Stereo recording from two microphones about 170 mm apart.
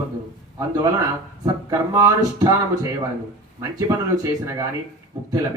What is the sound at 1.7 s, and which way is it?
Speech, 20° right (ahead or behind).